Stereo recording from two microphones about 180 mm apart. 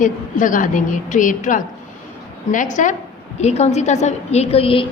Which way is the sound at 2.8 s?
45° left (ahead or behind).